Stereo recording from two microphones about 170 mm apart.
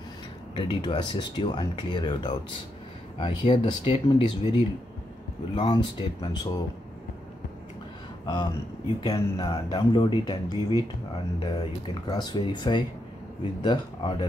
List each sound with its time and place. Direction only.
0.6 s speech: 30° left (ahead or behind)
8.3 s speech: 25° left (ahead or behind)
11.3 s speech: 25° left (ahead or behind)